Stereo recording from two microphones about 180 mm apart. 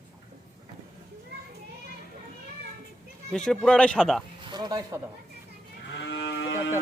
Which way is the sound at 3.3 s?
5° left (ahead or behind).